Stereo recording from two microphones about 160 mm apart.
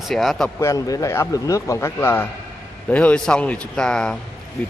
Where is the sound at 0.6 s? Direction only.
20° left (ahead or behind).